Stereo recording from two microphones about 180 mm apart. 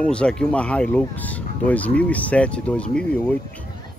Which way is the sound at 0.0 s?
5° left (ahead or behind).